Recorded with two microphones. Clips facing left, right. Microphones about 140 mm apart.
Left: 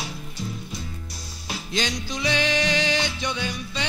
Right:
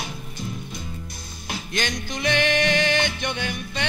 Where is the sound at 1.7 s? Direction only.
55° right (ahead or behind).